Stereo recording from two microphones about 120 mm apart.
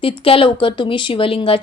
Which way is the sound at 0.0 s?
50° left (ahead or behind).